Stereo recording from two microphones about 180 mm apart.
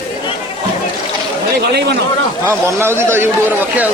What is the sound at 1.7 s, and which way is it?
Speech, 65° right (ahead or behind).